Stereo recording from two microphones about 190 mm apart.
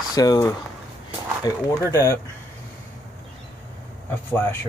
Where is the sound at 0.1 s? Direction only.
20° left (ahead or behind).